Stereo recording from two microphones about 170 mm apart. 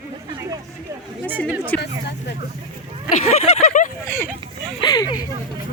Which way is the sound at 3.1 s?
40° left (ahead or behind).